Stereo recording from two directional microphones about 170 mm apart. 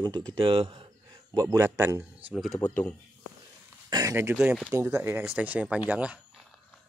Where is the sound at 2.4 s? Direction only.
10° left (ahead or behind).